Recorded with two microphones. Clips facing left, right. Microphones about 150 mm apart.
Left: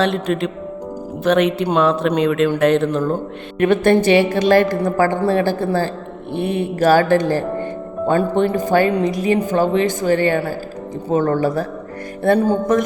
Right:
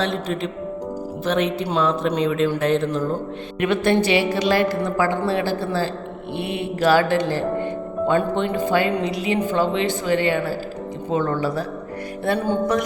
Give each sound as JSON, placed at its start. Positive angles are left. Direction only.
{"t": 0.0, "sound": "speech", "side_deg": 65}
{"t": 3.6, "sound": "speech", "side_deg": 50}